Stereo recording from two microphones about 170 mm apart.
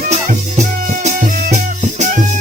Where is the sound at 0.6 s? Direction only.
45° right (ahead or behind).